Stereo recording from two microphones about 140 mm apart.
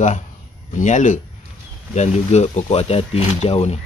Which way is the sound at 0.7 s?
60° left (ahead or behind).